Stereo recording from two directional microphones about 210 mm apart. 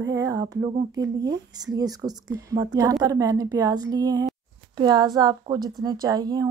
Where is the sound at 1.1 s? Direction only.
20° right (ahead or behind).